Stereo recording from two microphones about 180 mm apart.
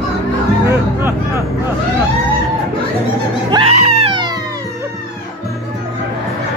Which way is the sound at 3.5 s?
30° right (ahead or behind).